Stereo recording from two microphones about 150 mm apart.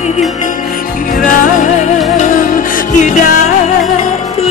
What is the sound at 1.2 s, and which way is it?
Music, 60° left (ahead or behind).